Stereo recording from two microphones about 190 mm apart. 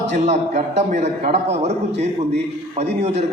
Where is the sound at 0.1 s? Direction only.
35° right (ahead or behind).